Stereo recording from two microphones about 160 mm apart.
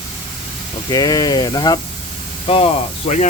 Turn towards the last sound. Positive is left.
turn(degrees=40)  # may be behind; listen again after turning